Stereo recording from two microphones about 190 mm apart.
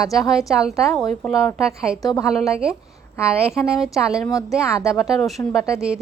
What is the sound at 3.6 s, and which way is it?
Speech, 5° right (ahead or behind).